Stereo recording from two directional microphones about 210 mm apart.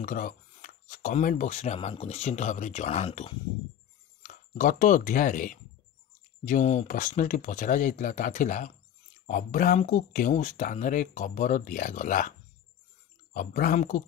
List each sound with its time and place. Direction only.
0.0 s speech: 40° left (ahead or behind)